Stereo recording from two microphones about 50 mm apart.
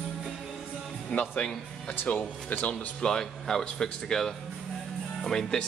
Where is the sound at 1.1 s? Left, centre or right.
Left.